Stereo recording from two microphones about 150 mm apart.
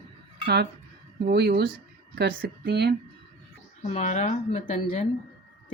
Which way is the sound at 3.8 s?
45° left (ahead or behind).